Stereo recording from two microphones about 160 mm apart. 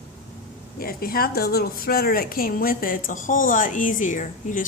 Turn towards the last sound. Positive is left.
turn(degrees=55)  # may be behind; listen again after turning